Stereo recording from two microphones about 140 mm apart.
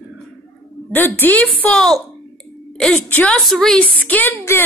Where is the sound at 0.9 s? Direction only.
15° left (ahead or behind).